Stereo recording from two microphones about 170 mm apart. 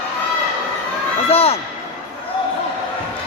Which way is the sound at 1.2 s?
35° left (ahead or behind).